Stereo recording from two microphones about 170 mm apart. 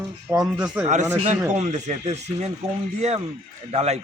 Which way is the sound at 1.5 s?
45° right (ahead or behind).